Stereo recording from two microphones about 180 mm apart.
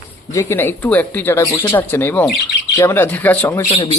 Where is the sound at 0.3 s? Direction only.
15° left (ahead or behind).